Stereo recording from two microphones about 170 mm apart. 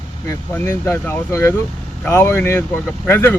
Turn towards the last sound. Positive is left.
turn(degrees=15)  # may be behind; listen again after turning